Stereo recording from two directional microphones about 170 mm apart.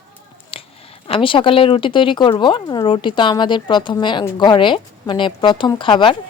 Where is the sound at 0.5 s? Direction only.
35° left (ahead or behind).